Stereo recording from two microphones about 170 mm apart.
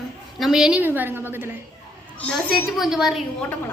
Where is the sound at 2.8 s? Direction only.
Centre (ahead or behind).